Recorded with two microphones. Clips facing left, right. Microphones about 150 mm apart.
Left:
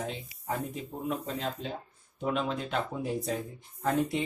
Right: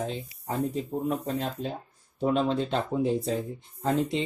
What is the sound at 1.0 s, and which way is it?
Speech, 45° right (ahead or behind).